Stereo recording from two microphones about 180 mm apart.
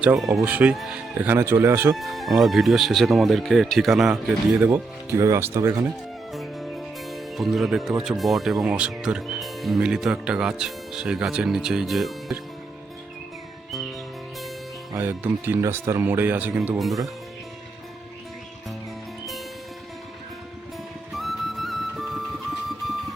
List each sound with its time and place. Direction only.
0.2 s speech: centre (ahead or behind)
2.0 s speech: centre (ahead or behind)
4.6 s speech: 15° right (ahead or behind)
6.3 s speech: centre (ahead or behind)
14.9 s speech: 10° right (ahead or behind)
21.1 s flute: centre (ahead or behind)